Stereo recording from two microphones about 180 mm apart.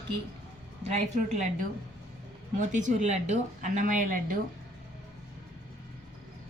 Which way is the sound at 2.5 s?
45° right (ahead or behind).